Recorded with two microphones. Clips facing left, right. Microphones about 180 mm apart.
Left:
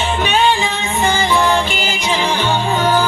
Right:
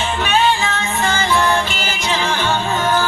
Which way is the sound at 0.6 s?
15° left (ahead or behind).